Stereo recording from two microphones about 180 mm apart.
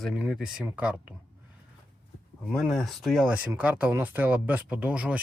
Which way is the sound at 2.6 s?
Centre (ahead or behind).